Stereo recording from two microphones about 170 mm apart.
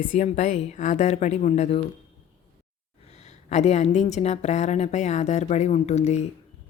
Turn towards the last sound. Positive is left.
turn(degrees=40)  # may be behind; listen again after turning